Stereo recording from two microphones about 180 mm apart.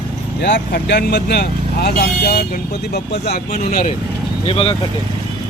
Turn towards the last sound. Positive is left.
turn(degrees=30)  # may be behind; listen again after turning